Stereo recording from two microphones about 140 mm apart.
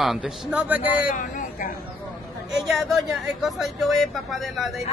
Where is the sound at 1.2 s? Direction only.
70° left (ahead or behind).